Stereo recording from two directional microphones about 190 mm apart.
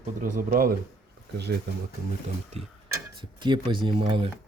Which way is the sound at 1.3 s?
60° right (ahead or behind).